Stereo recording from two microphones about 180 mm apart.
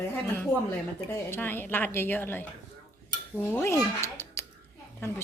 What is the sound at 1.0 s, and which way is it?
Speech, 10° left (ahead or behind).